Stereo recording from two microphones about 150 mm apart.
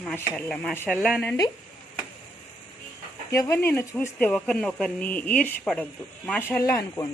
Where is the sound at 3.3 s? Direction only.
20° left (ahead or behind).